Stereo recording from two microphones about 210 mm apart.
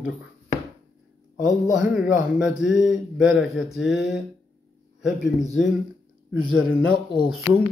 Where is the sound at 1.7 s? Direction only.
5° right (ahead or behind).